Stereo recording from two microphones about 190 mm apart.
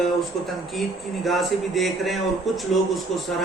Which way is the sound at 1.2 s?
Centre (ahead or behind).